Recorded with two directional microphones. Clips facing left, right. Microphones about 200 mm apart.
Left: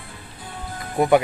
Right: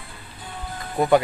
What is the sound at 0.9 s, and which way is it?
Speech, 15° left (ahead or behind).